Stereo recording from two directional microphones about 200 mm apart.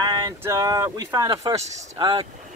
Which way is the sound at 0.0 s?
20° right (ahead or behind).